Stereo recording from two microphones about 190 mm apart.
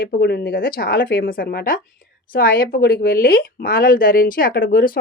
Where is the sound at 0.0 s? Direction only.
55° left (ahead or behind).